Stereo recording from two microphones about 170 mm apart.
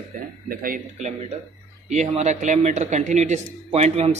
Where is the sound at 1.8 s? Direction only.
45° right (ahead or behind).